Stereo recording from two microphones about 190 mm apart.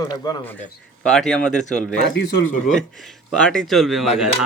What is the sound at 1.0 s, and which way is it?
Speech, 5° left (ahead or behind).